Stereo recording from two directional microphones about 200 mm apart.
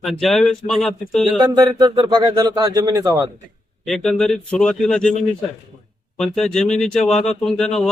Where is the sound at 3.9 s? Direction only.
Centre (ahead or behind).